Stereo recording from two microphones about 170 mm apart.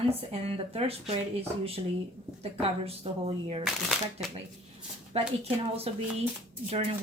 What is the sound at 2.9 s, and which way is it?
Speech, 35° right (ahead or behind).